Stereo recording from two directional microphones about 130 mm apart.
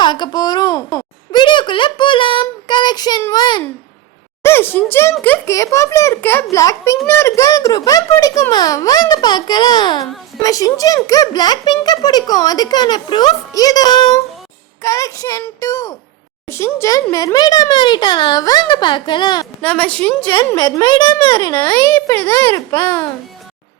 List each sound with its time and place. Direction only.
0.0 s a sound: 35° left (ahead or behind)
3.3 s a child's voice: 35° left (ahead or behind)
4.4 s a child's voice: 15° left (ahead or behind); by 19.5 s 35° left (ahead or behind)
19.6 s a child's voice: 10° left (ahead or behind)
20.2 s a child's voice: 35° left (ahead or behind)
22.4 s a child's voice: 20° left (ahead or behind)